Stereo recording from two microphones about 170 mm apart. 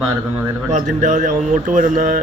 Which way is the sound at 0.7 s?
45° right (ahead or behind).